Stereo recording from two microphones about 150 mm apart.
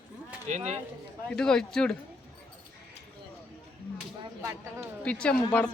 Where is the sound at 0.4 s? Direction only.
50° right (ahead or behind).